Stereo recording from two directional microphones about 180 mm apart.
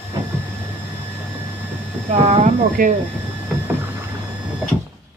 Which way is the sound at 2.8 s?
50° right (ahead or behind).